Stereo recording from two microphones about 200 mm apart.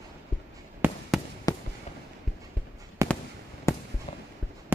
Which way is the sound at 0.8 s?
10° right (ahead or behind).